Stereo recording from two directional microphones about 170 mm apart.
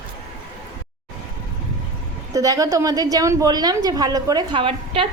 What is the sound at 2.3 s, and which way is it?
A woman's voice, 20° right (ahead or behind).